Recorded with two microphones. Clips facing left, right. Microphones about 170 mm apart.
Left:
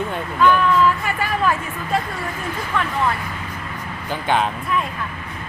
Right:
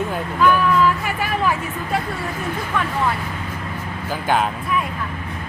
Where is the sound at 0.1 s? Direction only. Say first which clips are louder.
Left 1 dB; 5° right (ahead or behind).